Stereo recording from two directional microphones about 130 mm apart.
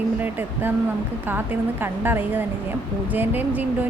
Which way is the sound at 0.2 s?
15° right (ahead or behind).